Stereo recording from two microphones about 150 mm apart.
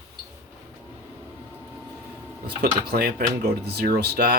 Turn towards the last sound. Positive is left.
turn(degrees=-90)